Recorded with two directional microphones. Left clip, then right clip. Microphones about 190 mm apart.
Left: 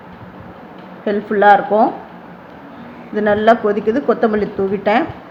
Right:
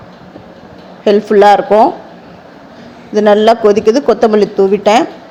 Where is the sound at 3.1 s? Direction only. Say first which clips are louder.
Right 5 dB; 40° right (ahead or behind).